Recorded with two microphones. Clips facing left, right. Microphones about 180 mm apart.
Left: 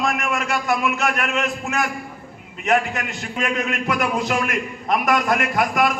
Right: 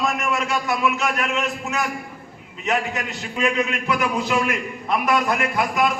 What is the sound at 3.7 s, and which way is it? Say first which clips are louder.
A man's voice: left 1 dB; 50° left (ahead or behind).